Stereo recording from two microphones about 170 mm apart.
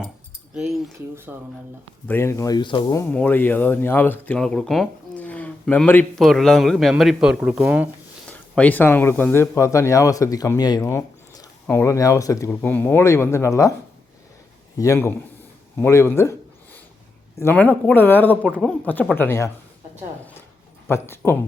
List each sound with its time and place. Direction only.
0.5 s speech: 5° right (ahead or behind)
2.0 s speech: 15° left (ahead or behind)
3.0 s speech: 10° left (ahead or behind)
8.3 s speech: 10° left (ahead or behind)
14.8 s speech: 15° left (ahead or behind)
17.4 s speech: 10° left (ahead or behind)
18.4 s speech: 5° right (ahead or behind)
19.1 s speech: 15° left (ahead or behind)
20.8 s speech: 15° left (ahead or behind)